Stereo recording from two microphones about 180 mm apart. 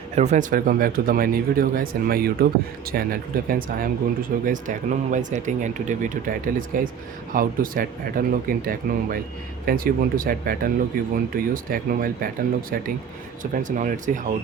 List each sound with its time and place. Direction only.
0.2 s speech: 45° right (ahead or behind)
13.4 s speech: 45° right (ahead or behind)